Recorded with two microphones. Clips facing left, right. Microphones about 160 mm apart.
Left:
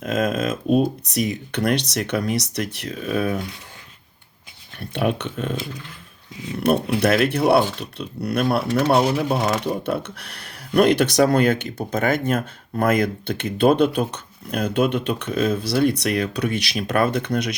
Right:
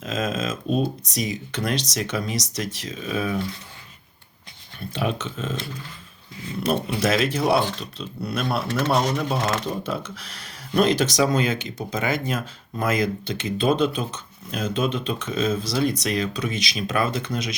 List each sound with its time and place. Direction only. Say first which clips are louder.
0.0 s speech: left 4 dB; 55° left (ahead or behind)
4.8 s speech: left 4 dB; 60° left (ahead or behind)
7.0 s speech: left 2 dB; 60° left (ahead or behind)